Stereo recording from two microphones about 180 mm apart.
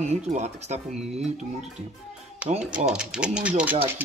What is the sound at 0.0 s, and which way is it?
Speech, 40° right (ahead or behind).